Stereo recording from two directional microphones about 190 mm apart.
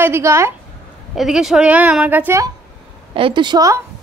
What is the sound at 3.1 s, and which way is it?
Speech, 25° right (ahead or behind).